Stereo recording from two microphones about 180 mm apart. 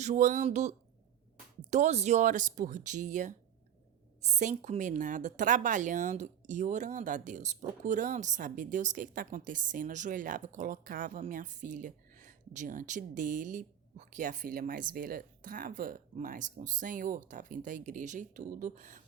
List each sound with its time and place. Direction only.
0.0 s a woman's voice: 45° right (ahead or behind)